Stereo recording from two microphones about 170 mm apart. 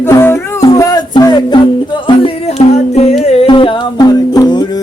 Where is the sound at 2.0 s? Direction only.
35° left (ahead or behind).